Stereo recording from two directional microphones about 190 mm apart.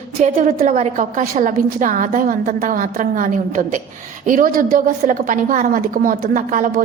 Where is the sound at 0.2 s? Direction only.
40° right (ahead or behind).